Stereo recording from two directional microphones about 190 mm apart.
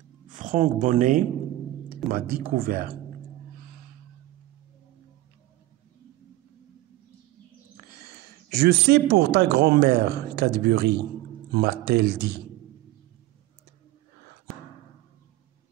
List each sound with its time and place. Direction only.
0.3 s speech: 40° right (ahead or behind)
2.1 s speech: 50° right (ahead or behind)
8.5 s speech: 60° right (ahead or behind)